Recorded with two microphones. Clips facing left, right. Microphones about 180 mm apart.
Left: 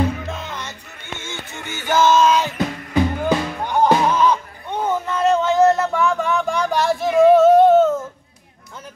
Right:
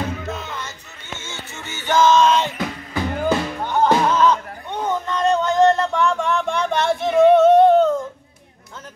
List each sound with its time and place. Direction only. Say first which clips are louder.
1.2 s music: left 4 dB; 15° left (ahead or behind)